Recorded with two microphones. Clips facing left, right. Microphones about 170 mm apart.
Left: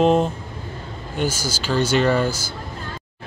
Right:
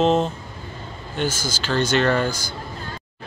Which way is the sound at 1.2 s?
10° left (ahead or behind).